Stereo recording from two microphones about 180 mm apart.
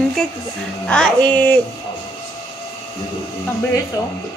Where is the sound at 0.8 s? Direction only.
5° left (ahead or behind).